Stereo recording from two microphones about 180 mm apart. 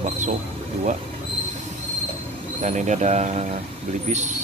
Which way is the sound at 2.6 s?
45° right (ahead or behind).